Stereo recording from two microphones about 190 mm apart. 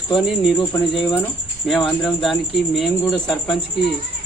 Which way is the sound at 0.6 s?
25° left (ahead or behind).